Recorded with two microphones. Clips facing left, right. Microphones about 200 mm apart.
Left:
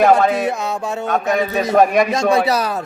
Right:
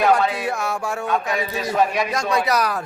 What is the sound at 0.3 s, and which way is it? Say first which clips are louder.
Speech: left 5 dB; 20° left (ahead or behind).